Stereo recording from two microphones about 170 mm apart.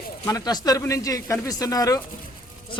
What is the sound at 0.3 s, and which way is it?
Speech, 20° left (ahead or behind).